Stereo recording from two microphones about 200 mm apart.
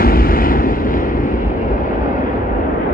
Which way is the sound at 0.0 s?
45° left (ahead or behind).